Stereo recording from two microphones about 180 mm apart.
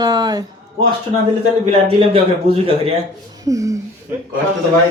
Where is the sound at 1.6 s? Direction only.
35° right (ahead or behind).